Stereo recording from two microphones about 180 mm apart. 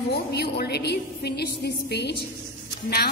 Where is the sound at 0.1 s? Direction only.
60° left (ahead or behind).